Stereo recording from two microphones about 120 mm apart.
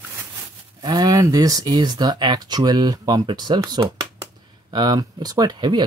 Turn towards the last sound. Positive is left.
turn(degrees=-35)  # may be behind; listen again after turning